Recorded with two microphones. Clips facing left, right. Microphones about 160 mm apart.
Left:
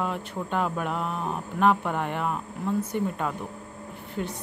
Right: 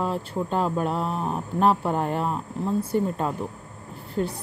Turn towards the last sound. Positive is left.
turn(degrees=-35)  # may be behind; listen again after turning